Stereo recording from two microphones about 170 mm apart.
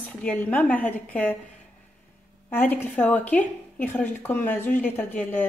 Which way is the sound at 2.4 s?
10° left (ahead or behind).